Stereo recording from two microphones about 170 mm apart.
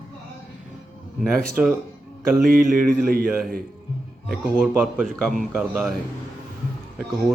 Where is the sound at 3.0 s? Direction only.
60° right (ahead or behind).